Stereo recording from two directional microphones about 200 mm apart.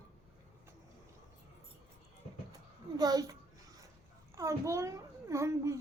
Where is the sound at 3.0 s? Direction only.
20° right (ahead or behind).